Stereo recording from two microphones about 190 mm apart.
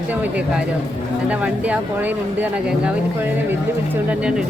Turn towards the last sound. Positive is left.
turn(degrees=-5)  # may be behind; listen again after turning